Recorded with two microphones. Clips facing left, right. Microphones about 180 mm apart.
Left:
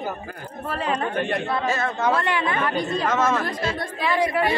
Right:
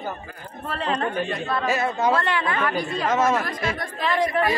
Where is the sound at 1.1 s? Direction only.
60° left (ahead or behind).